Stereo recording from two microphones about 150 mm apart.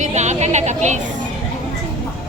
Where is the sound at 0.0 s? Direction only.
50° right (ahead or behind).